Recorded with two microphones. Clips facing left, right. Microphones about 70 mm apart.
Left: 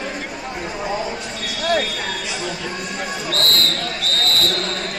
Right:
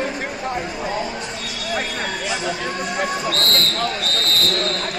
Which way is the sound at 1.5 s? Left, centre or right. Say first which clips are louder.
Left 10 dB; left.